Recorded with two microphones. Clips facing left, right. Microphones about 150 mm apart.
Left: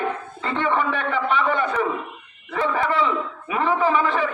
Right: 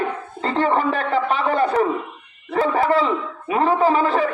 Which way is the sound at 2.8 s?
35° right (ahead or behind).